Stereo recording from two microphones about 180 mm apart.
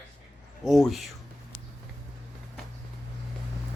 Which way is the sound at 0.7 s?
Centre (ahead or behind).